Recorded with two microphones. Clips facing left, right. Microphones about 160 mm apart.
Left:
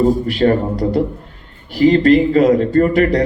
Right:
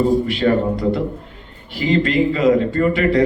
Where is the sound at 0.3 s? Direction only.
40° left (ahead or behind).